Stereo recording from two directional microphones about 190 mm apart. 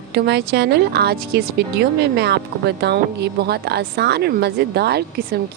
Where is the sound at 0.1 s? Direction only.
60° right (ahead or behind).